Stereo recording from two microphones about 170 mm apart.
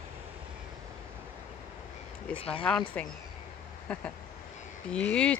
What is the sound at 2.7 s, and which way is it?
Speech, 5° left (ahead or behind).